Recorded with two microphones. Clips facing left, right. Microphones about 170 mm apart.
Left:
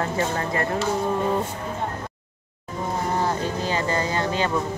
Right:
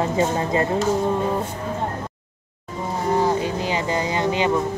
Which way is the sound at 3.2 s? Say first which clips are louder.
Right 4 dB; 15° right (ahead or behind).